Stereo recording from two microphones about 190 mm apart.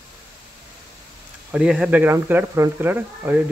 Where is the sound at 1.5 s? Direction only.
5° right (ahead or behind).